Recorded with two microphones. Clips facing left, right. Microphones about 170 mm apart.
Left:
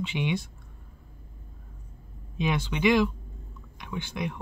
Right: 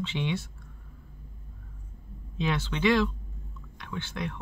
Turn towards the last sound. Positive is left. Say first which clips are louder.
# left 2 dB
turn(degrees=15)  # may be behind; listen again after turning